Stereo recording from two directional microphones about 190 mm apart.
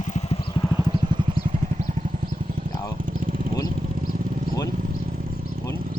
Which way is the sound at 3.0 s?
45° right (ahead or behind).